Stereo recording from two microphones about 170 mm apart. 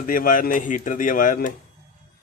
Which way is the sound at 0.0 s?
55° left (ahead or behind).